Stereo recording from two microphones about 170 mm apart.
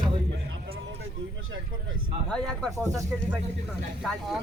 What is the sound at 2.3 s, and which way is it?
Speech, 5° left (ahead or behind).